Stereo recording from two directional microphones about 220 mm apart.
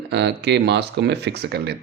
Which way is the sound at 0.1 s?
50° right (ahead or behind).